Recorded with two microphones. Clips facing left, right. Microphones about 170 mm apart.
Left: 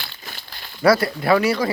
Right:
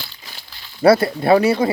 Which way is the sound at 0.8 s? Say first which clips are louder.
Right 4 dB; 25° right (ahead or behind).